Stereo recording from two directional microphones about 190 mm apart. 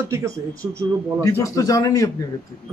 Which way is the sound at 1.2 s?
15° left (ahead or behind).